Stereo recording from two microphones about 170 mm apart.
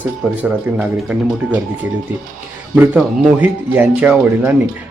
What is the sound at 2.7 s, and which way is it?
Speech, 10° right (ahead or behind).